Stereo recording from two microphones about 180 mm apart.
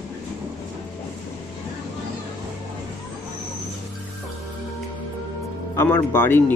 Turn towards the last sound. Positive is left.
turn(degrees=10)  # may be behind; listen again after turning